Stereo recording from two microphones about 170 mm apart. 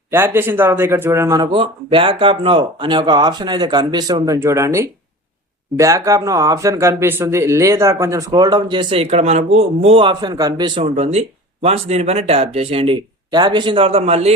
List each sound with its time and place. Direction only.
0.1 s a man's voice: 15° right (ahead or behind)
1.5 s speech: 30° right (ahead or behind)